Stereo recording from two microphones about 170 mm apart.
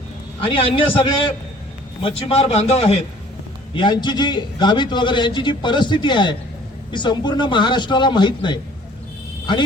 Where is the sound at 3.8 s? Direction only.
25° left (ahead or behind).